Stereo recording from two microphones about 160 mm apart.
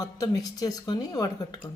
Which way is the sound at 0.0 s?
20° left (ahead or behind).